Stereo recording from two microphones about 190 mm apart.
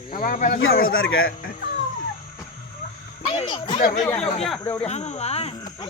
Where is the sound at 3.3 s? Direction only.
25° left (ahead or behind).